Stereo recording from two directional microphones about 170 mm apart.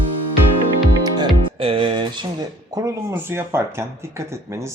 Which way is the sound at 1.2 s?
30° right (ahead or behind).